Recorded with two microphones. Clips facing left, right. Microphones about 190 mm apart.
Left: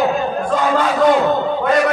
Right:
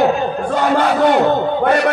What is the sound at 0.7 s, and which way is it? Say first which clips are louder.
Speech: even; 65° right (ahead or behind).